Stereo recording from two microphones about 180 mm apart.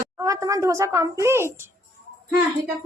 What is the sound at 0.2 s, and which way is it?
A woman's voice, 20° right (ahead or behind).